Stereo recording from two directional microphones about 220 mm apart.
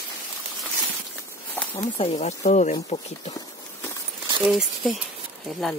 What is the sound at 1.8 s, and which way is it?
Speech, 30° left (ahead or behind).